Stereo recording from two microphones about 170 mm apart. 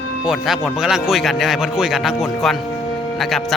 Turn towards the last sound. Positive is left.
turn(degrees=0)  # may be behind; listen again after turning